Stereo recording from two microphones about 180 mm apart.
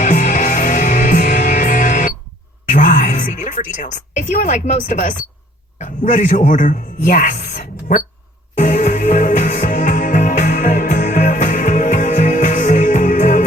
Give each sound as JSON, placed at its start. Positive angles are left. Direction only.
{"t": 0.0, "sound": "music", "side_deg": 45}
{"t": 5.8, "sound": "speech", "side_deg": 45}
{"t": 8.5, "sound": "music", "side_deg": 45}